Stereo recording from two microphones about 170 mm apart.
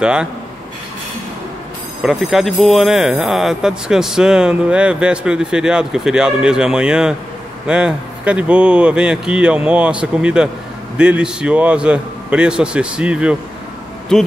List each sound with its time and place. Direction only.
0.0 s speech: 5° right (ahead or behind)
2.0 s a man's voice: centre (ahead or behind)